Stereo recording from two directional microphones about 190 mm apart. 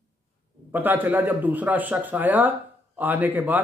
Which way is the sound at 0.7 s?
10° right (ahead or behind).